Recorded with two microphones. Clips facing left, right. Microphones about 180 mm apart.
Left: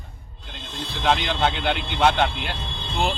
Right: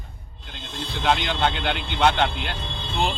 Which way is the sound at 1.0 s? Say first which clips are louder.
Left 1 dB; centre (ahead or behind).